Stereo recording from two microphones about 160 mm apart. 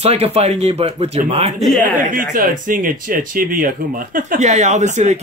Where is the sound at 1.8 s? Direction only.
55° right (ahead or behind).